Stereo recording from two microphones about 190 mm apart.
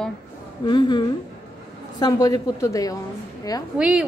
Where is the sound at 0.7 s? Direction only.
25° left (ahead or behind).